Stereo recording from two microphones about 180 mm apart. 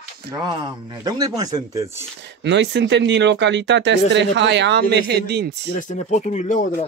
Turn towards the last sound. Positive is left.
turn(degrees=45)  # may be behind; listen again after turning